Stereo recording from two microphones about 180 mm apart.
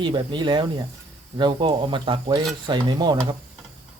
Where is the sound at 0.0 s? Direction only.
25° right (ahead or behind).